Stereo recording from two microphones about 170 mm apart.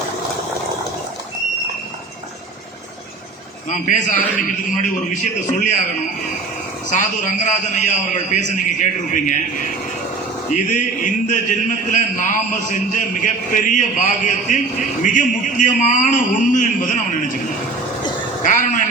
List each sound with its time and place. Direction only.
3.7 s a man's voice: 45° left (ahead or behind)
6.9 s a man's voice: 45° left (ahead or behind)
10.5 s a man's voice: 50° left (ahead or behind)
18.4 s vehicle: 50° left (ahead or behind)